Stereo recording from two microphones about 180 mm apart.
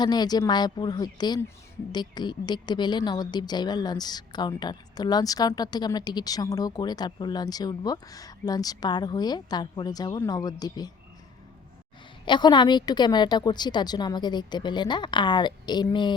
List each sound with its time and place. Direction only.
0.0 s a woman's voice: 25° left (ahead or behind)
12.2 s a woman's voice: 25° left (ahead or behind)